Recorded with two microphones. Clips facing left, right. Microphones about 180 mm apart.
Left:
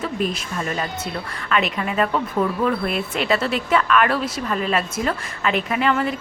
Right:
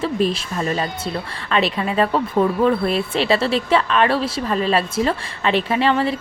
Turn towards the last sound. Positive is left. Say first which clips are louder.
# right 3 dB
turn(degrees=-30)  # may be behind; listen again after turning